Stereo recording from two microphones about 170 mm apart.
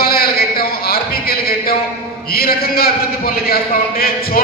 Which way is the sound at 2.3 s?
65° left (ahead or behind).